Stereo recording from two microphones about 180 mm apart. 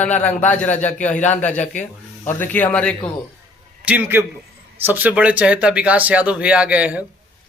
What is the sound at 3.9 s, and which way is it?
Speech, 10° right (ahead or behind).